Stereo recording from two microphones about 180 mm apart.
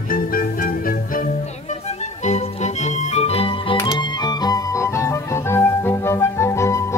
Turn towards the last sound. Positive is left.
turn(degrees=15)  # may be behind; listen again after turning